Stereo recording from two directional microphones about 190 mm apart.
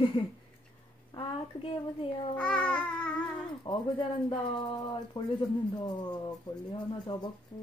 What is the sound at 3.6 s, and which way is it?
Speech, 20° left (ahead or behind).